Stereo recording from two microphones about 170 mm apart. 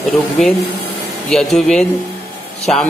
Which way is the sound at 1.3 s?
Centre (ahead or behind).